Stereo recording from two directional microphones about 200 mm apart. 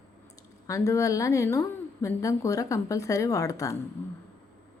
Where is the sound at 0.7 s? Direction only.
15° left (ahead or behind).